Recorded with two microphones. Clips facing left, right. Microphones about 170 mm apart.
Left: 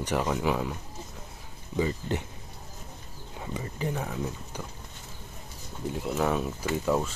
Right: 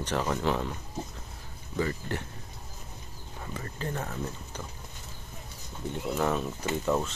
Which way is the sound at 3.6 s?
15° left (ahead or behind).